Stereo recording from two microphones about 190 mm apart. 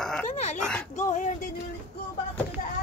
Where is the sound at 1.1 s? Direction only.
40° left (ahead or behind).